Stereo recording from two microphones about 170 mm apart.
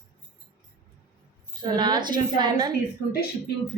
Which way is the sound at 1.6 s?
25° right (ahead or behind).